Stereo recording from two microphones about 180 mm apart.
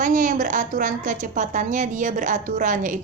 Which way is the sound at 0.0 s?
45° right (ahead or behind).